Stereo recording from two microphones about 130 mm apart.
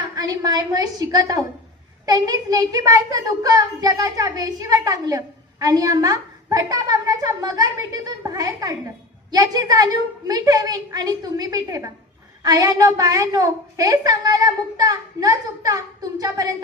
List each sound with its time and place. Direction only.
0.2 s a woman's voice: 30° right (ahead or behind)